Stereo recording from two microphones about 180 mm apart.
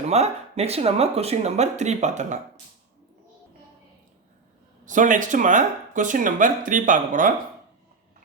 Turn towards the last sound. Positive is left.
turn(degrees=-45)  # may be behind; listen again after turning